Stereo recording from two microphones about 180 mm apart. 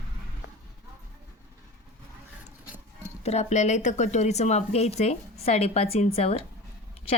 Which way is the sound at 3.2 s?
35° left (ahead or behind).